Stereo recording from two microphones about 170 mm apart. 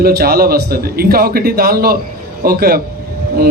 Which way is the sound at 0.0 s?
65° right (ahead or behind).